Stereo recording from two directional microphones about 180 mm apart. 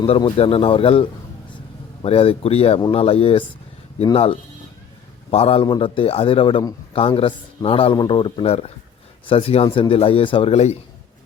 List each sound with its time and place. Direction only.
0.0 s a man's voice: 30° left (ahead or behind)